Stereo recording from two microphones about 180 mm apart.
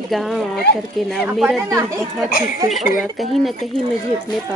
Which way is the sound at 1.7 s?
15° right (ahead or behind).